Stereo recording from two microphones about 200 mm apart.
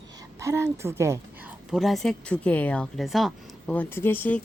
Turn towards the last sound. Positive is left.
turn(degrees=10)  # may be behind; listen again after turning